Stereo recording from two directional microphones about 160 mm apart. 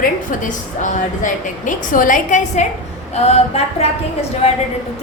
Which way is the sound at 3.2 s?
40° left (ahead or behind).